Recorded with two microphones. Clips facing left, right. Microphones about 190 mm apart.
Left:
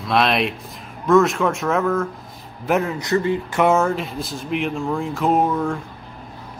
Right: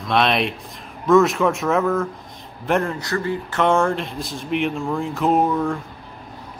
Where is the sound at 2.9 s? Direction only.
20° left (ahead or behind).